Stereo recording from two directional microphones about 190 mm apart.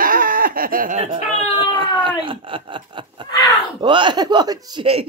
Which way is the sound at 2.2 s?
25° right (ahead or behind).